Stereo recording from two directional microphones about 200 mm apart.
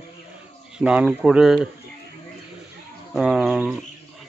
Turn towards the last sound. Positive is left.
turn(degrees=0)  # may be behind; listen again after turning